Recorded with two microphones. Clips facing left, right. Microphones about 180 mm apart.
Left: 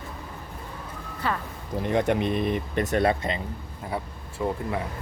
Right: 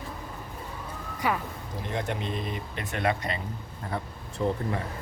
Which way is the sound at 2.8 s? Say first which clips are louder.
Left 4 dB; 35° left (ahead or behind).